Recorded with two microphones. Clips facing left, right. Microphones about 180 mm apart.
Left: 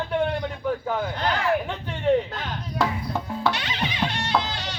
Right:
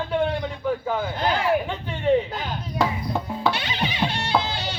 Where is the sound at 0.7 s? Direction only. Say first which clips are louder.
Right 1 dB; 5° right (ahead or behind).